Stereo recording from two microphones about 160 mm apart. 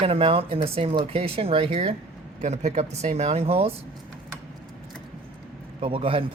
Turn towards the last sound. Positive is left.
turn(degrees=-35)  # may be behind; listen again after turning